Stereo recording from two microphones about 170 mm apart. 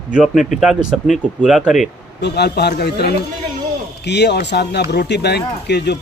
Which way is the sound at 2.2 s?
80° left.